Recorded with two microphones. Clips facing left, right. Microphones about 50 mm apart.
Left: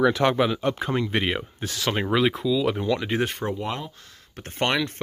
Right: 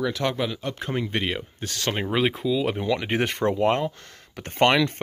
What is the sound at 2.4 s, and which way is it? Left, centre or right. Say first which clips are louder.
Speech: left 1 dB; centre.